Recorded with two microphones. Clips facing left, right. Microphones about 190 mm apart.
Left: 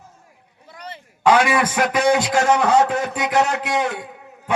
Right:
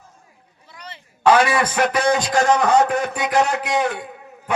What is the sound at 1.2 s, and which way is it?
A man's voice, 15° left (ahead or behind).